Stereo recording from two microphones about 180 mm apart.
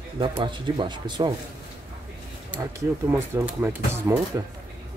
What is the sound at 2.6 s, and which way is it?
Speech, 20° right (ahead or behind).